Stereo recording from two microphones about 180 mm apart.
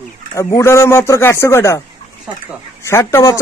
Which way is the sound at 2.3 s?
5° right (ahead or behind).